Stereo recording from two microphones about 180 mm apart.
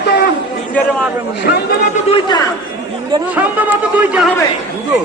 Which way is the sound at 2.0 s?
25° left (ahead or behind).